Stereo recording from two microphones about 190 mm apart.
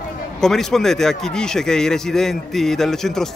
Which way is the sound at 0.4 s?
Centre (ahead or behind).